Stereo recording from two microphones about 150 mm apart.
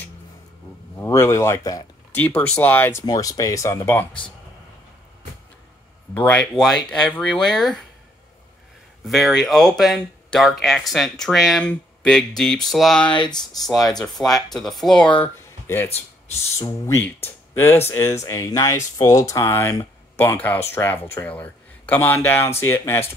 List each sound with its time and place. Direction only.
0.9 s speech: 15° left (ahead or behind)
2.1 s speech: 10° left (ahead or behind)
6.1 s speech: 10° left (ahead or behind)
9.0 s speech: centre (ahead or behind)
13.1 s speech: 30° left (ahead or behind)
14.3 s speech: centre (ahead or behind)
15.3 s a sound: 15° left (ahead or behind)
16.5 s speech: 20° left (ahead or behind)